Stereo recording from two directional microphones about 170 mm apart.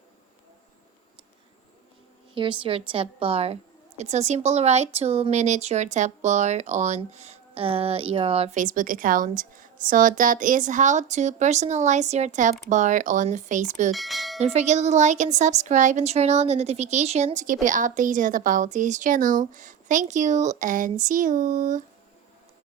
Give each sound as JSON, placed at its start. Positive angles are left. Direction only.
{"t": 2.3, "sound": "a woman's voice", "side_deg": -30}
{"t": 8.5, "sound": "speech", "side_deg": -50}
{"t": 13.9, "sound": "speech", "side_deg": 0}
{"t": 14.3, "sound": "speech", "side_deg": -40}